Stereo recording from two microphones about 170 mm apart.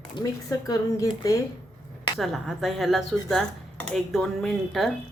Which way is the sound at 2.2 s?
Centre (ahead or behind).